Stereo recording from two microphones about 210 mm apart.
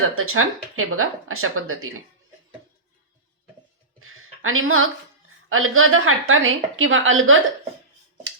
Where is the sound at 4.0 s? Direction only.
80° right.